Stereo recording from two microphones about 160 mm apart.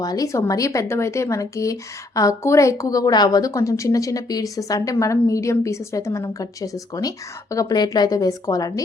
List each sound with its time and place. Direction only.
0.0 s speech: 20° left (ahead or behind)